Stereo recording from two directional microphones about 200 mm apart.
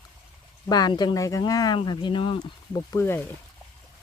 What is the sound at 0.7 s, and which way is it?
Speech, 20° left (ahead or behind).